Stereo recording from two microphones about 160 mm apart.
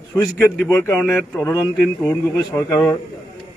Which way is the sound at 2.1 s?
20° left (ahead or behind).